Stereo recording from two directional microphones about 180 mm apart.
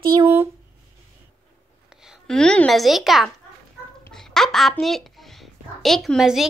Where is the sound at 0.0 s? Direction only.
20° right (ahead or behind).